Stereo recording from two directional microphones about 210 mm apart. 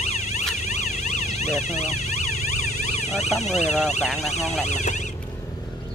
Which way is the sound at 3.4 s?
30° left (ahead or behind).